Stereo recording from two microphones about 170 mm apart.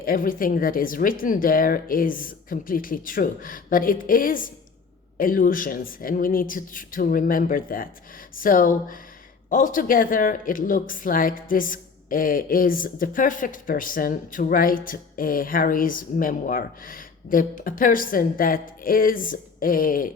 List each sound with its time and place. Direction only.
0.0 s speech: 55° left (ahead or behind)